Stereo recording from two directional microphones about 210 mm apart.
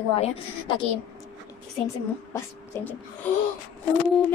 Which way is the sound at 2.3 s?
10° left (ahead or behind).